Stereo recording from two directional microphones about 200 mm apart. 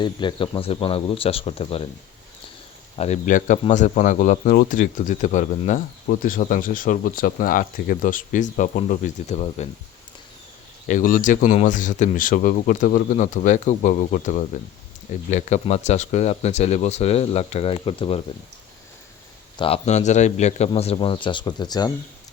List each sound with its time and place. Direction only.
0.0 s speech: 25° left (ahead or behind)
2.9 s speech: 30° left (ahead or behind)
10.8 s speech: 40° left (ahead or behind)
19.5 s speech: 30° left (ahead or behind)